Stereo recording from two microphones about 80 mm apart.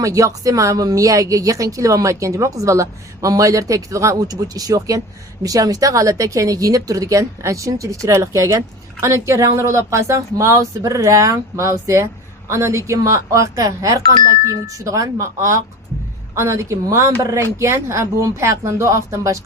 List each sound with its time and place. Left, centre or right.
0.0 s speech: right